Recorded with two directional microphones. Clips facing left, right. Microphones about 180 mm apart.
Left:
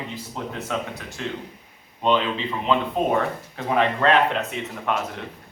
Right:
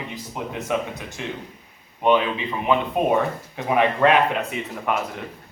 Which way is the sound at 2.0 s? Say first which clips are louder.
Right 2 dB; 15° right (ahead or behind).